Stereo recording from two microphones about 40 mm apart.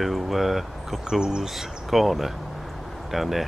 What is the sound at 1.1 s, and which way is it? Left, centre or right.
Speech, centre.